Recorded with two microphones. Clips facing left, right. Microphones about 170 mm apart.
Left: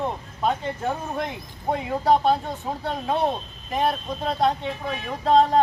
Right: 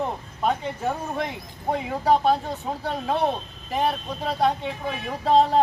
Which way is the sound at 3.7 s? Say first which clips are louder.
Left 1 dB; centre (ahead or behind).